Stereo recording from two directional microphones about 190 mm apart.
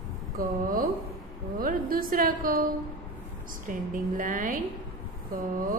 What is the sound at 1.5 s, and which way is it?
A woman's voice, 50° right (ahead or behind).